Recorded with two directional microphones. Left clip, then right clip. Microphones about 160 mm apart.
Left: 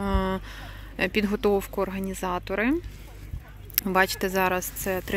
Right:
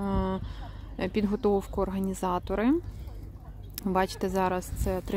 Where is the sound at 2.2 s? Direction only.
15° right (ahead or behind).